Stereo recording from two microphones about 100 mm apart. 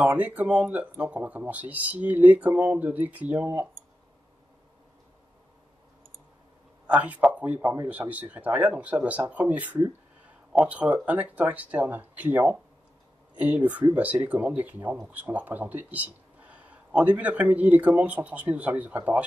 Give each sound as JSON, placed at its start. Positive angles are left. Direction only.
{"t": 0.0, "sound": "speech", "side_deg": -15}
{"t": 6.9, "sound": "speech", "side_deg": -15}